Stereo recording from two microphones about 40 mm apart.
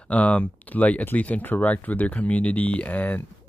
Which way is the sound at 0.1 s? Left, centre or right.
Left.